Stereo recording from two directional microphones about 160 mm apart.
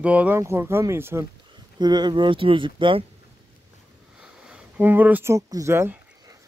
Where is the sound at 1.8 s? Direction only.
25° right (ahead or behind).